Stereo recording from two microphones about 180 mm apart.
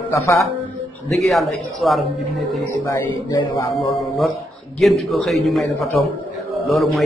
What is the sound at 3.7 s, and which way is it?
A man's voice, centre (ahead or behind).